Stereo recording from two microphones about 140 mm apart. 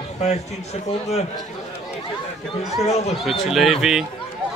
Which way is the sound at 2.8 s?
50° left (ahead or behind).